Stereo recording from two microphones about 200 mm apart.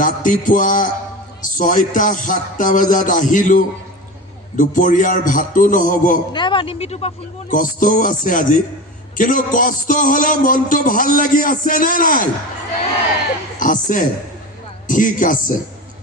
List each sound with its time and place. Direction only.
0.0 s music: 40° left (ahead or behind)
6.3 s speech: 25° left (ahead or behind)
7.5 s music: 40° left (ahead or behind)
9.1 s a man's voice: 40° left (ahead or behind)
13.6 s music: 40° left (ahead or behind)